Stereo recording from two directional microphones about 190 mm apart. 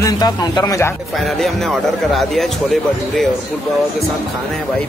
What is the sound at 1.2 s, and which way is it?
Speech, centre (ahead or behind).